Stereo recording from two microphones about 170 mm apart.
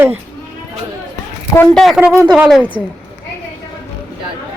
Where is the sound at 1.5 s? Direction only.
5° left (ahead or behind).